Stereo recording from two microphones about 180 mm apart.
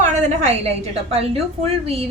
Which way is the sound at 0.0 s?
40° right (ahead or behind).